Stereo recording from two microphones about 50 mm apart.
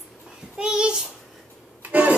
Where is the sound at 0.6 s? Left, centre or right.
Centre.